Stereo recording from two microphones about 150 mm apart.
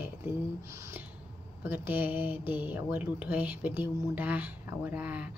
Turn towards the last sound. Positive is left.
turn(degrees=-10)  # may be behind; listen again after turning